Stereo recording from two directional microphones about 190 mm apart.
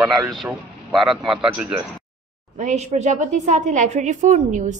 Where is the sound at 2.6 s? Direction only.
40° right (ahead or behind).